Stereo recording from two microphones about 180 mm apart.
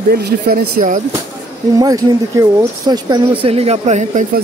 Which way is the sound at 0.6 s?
45° right (ahead or behind).